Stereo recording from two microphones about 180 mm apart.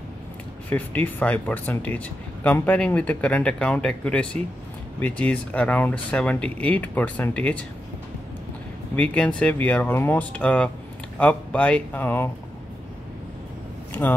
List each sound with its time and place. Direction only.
0.7 s speech: 10° left (ahead or behind)
8.9 s speech: 10° left (ahead or behind)